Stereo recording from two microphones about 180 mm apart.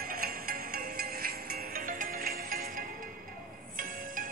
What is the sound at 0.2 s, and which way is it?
Music, 55° right (ahead or behind).